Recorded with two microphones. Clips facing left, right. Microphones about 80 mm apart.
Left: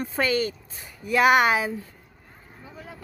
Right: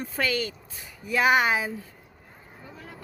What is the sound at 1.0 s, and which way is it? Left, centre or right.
Speech, left.